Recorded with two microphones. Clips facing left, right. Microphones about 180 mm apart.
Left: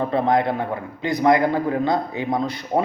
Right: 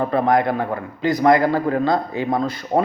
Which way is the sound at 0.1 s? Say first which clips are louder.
Right 1 dB; 25° left (ahead or behind).